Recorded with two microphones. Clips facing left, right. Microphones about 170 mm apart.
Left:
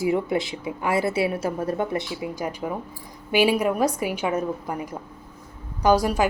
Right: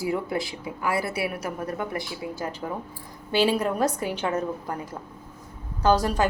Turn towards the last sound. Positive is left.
turn(degrees=10)  # may be behind; listen again after turning